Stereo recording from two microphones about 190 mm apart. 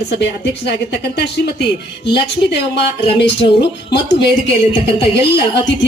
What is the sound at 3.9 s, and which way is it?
Speech, 65° left (ahead or behind).